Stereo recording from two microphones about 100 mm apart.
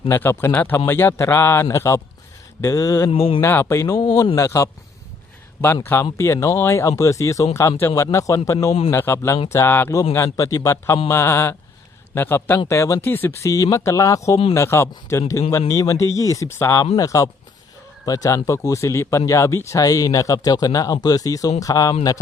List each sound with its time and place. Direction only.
0.1 s speech: 25° left (ahead or behind)
3.1 s speech: 70° left (ahead or behind)
3.4 s speech: 25° left (ahead or behind)
13.5 s speech: 35° left (ahead or behind)